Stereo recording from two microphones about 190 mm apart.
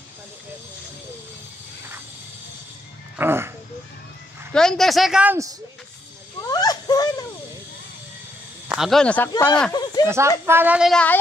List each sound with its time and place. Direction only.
3.2 s speech: 10° right (ahead or behind)
4.5 s speech: 5° left (ahead or behind); by 5.6 s 15° right (ahead or behind)
6.4 s a sound: 20° left (ahead or behind)
8.6 s speech: centre (ahead or behind)
9.3 s speech: 20° left (ahead or behind)
9.7 s a sound: 20° left (ahead or behind)
10.0 s a woman's voice: 15° right (ahead or behind); by 11.1 s 5° left (ahead or behind)